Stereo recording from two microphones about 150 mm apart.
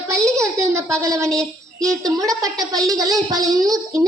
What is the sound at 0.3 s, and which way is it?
A woman's voice, 20° right (ahead or behind).